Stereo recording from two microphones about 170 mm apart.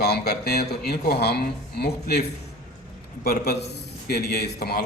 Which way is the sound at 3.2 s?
65° left (ahead or behind).